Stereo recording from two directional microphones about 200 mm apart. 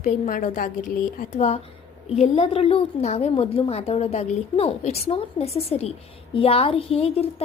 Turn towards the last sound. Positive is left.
turn(degrees=30)  # may be behind; listen again after turning